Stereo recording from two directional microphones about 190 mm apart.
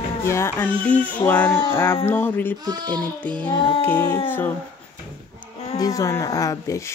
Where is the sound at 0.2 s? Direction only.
15° left (ahead or behind).